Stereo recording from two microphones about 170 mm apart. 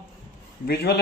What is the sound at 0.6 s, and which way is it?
Speech, 65° left (ahead or behind).